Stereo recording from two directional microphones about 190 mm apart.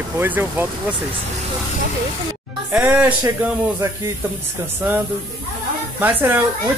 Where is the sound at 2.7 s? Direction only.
10° right (ahead or behind).